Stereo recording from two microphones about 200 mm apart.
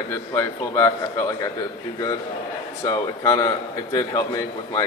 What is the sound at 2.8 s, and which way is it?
A man's voice, 15° left (ahead or behind).